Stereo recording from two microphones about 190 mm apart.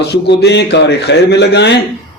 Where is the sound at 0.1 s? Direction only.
60° left (ahead or behind).